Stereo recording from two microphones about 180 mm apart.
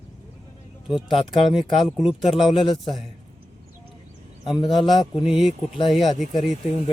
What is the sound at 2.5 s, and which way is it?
Speech, 30° left (ahead or behind).